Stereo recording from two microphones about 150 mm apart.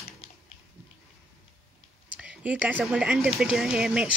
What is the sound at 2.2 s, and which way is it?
Speech, 10° right (ahead or behind).